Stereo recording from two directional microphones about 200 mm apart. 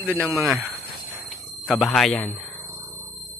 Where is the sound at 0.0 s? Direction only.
10° right (ahead or behind).